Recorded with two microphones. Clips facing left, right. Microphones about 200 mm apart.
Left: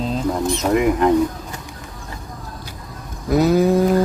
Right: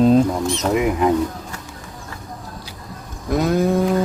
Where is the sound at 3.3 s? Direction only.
5° left (ahead or behind).